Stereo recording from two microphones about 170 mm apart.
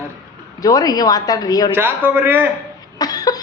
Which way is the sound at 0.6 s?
20° left (ahead or behind).